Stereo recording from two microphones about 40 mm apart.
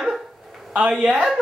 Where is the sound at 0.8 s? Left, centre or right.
Right.